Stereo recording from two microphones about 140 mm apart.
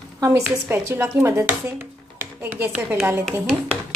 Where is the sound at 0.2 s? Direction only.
20° right (ahead or behind).